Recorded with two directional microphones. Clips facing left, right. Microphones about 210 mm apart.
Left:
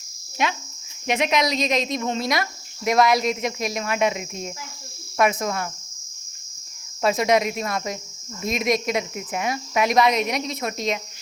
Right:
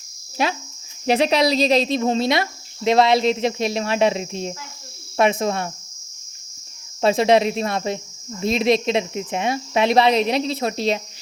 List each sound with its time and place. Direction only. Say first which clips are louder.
0.4 s speech: right 3 dB; 35° right (ahead or behind)
7.0 s speech: right 4 dB; 30° right (ahead or behind)